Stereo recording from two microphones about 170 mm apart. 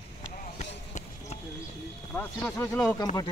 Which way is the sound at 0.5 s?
45° left (ahead or behind).